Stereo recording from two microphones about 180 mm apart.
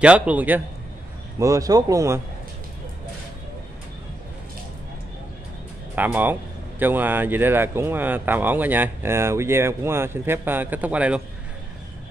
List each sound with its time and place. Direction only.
0.0 s speech: 5° right (ahead or behind)
5.9 s speech: 10° right (ahead or behind)